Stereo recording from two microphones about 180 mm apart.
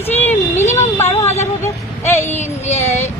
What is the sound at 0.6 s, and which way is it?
Speech, 40° left (ahead or behind).